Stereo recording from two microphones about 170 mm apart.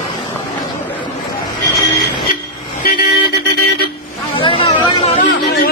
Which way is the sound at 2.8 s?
55° left (ahead or behind).